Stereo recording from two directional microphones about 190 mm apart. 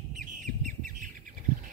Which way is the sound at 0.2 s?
45° right (ahead or behind).